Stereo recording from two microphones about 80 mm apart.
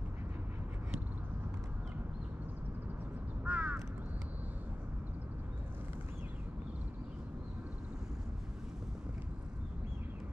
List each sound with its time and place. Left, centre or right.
3.4 s crow: centre